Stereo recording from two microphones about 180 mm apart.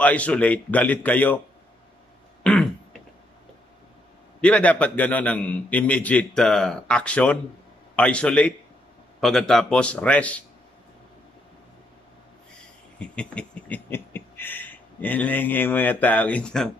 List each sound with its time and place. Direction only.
0.0 s a man's voice: 10° left (ahead or behind)
2.4 s throat clearing: 5° left (ahead or behind)
4.4 s a man's voice: 5° left (ahead or behind)
13.0 s a sound: 5° left (ahead or behind)